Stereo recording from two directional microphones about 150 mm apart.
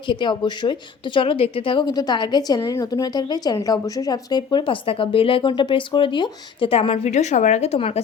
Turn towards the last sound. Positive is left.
turn(degrees=40)  # may be behind; listen again after turning